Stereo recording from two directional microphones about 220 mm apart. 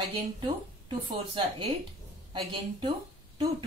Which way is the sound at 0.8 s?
25° right (ahead or behind).